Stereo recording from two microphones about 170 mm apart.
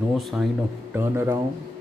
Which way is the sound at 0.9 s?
15° right (ahead or behind).